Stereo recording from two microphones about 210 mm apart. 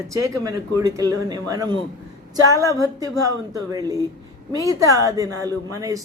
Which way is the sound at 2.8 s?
15° right (ahead or behind).